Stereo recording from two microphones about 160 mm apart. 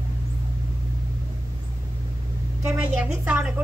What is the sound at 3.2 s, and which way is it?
Speech, 10° right (ahead or behind).